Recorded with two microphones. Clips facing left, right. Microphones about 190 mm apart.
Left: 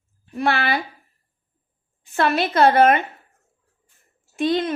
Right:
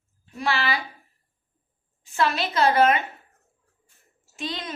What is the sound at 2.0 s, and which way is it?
Speech, 60° left (ahead or behind).